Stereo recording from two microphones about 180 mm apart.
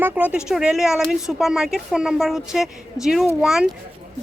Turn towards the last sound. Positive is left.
turn(degrees=-5)  # may be behind; listen again after turning